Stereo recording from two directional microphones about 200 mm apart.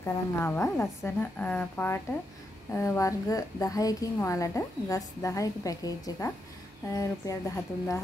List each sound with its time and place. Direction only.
0.0 s a woman's voice: 10° left (ahead or behind)